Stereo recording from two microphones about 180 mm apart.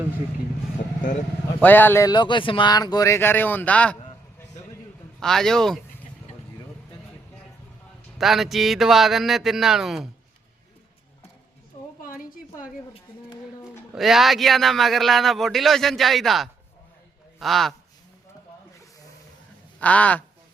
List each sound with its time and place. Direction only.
1.6 s speech: 10° left (ahead or behind)
5.2 s a man's voice: centre (ahead or behind)
8.2 s a man's voice: centre (ahead or behind)
12.0 s a sound: 50° left (ahead or behind)
13.9 s a man's voice: centre (ahead or behind)
19.8 s speech: 10° left (ahead or behind)